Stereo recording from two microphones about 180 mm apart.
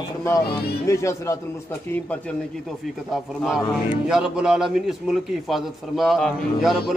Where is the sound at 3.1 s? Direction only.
Centre (ahead or behind).